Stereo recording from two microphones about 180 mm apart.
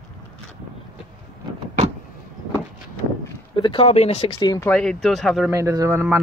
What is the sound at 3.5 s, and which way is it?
Speech, 30° left (ahead or behind).